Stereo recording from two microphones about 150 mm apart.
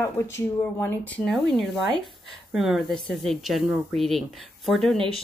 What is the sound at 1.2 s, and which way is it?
A woman's voice, centre (ahead or behind).